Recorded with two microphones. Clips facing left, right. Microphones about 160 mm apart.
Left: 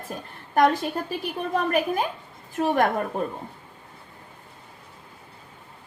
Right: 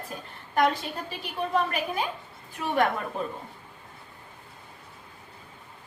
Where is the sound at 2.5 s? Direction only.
45° left (ahead or behind).